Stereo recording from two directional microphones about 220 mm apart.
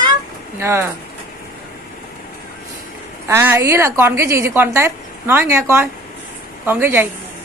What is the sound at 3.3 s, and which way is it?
A woman's voice, 10° right (ahead or behind).